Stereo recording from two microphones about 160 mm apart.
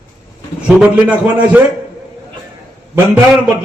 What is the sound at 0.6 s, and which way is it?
A man's voice, 10° right (ahead or behind).